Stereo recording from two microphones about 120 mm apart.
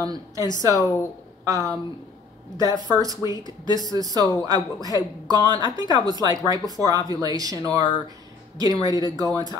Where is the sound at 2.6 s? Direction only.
30° right (ahead or behind).